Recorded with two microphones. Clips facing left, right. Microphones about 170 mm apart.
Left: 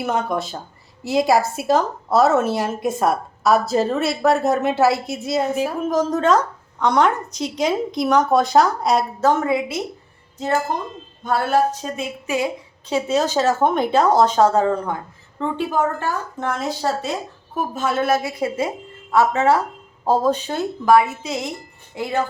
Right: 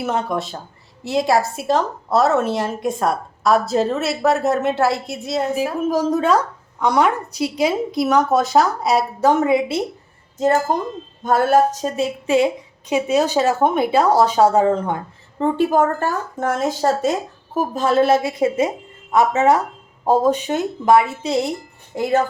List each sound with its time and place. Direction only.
0.0 s a woman's voice: centre (ahead or behind)
9.2 s a woman's voice: 20° right (ahead or behind)
11.2 s speech: 45° right (ahead or behind)
12.2 s a woman's voice: 25° right (ahead or behind)
12.9 s speech: 15° right (ahead or behind)
15.4 s speech: 45° right (ahead or behind)
21.9 s speech: 40° right (ahead or behind)